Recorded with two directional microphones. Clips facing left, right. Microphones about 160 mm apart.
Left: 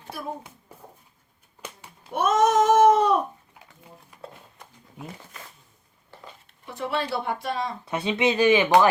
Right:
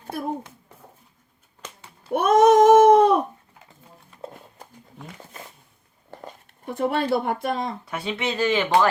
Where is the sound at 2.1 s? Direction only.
55° right (ahead or behind).